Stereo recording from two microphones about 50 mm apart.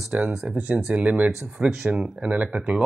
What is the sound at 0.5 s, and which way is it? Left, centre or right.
Speech, right.